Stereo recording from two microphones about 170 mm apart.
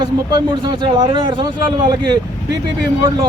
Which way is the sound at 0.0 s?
25° right (ahead or behind).